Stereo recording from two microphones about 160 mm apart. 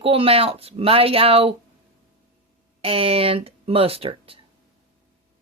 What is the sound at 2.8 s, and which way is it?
Speech, 35° right (ahead or behind).